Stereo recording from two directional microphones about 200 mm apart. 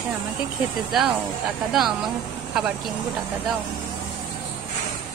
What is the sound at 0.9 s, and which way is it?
Speech, centre (ahead or behind).